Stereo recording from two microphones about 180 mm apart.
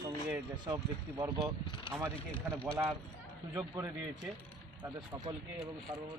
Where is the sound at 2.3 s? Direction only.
5° left (ahead or behind).